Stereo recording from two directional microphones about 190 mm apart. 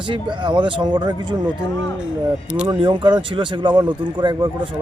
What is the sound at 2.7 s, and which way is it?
Speech, 25° right (ahead or behind).